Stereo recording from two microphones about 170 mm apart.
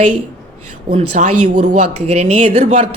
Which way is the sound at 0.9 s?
45° right (ahead or behind).